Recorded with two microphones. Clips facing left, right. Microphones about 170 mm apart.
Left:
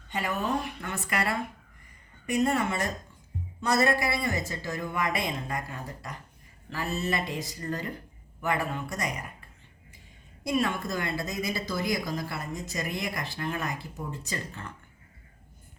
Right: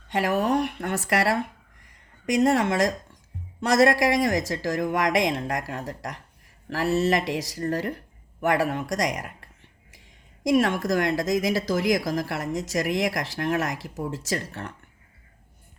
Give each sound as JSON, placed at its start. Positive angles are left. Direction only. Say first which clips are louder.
{"t": 0.1, "sound": "a woman's voice", "louder": "right 7 dB", "side_deg": -90}